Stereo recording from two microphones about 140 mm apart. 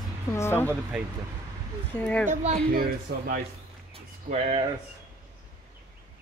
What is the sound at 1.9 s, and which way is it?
Speech, 10° left (ahead or behind).